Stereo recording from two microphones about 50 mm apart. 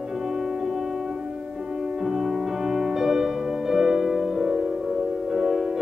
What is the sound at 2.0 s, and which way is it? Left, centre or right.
Music, centre.